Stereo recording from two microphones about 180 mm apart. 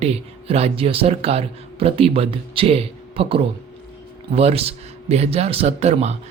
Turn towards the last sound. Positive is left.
turn(degrees=-35)  # may be behind; listen again after turning